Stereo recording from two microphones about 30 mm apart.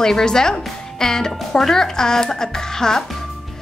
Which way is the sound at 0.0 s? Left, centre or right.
Left.